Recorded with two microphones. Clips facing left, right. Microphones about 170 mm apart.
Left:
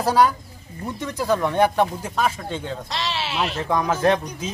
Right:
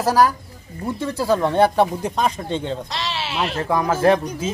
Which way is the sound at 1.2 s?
15° right (ahead or behind).